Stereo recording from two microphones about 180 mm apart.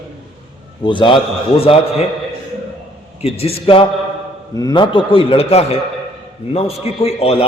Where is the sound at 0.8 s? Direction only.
25° left (ahead or behind).